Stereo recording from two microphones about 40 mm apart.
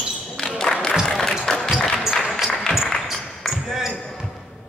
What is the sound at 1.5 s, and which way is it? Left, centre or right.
Music, centre.